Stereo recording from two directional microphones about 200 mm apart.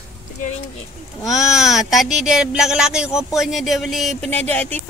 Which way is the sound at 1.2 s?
Centre (ahead or behind).